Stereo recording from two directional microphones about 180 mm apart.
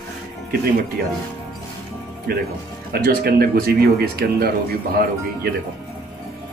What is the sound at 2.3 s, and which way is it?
Speech, 60° right (ahead or behind).